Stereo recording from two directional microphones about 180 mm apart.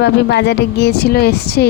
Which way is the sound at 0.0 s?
70° left (ahead or behind).